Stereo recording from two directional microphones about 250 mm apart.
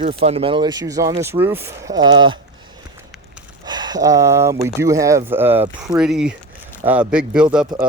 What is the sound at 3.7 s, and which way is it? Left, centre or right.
Speech, centre.